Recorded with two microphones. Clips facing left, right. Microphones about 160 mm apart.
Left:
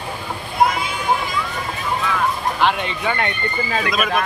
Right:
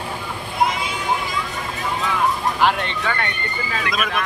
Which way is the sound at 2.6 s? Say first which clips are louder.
Even; 5° left (ahead or behind).